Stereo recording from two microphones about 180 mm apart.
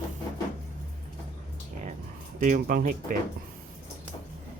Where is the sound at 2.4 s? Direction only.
45° right (ahead or behind).